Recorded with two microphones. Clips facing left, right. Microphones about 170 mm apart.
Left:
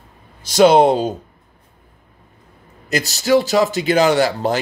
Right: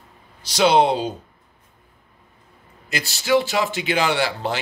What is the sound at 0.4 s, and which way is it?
Speech, 50° left (ahead or behind).